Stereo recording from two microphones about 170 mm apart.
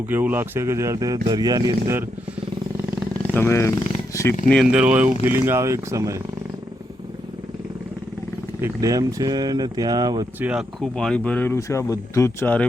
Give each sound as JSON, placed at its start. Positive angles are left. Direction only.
{"t": 0.1, "sound": "speech", "side_deg": -10}
{"t": 2.7, "sound": "wild animals", "side_deg": -15}
{"t": 3.3, "sound": "speech", "side_deg": 15}
{"t": 4.4, "sound": "speech", "side_deg": 0}
{"t": 8.6, "sound": "speech", "side_deg": -20}
{"t": 10.4, "sound": "speech", "side_deg": -5}